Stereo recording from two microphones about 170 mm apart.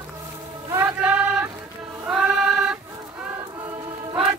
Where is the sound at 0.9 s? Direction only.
5° right (ahead or behind).